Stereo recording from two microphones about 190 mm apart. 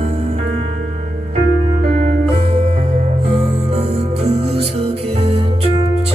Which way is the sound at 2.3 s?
30° right (ahead or behind).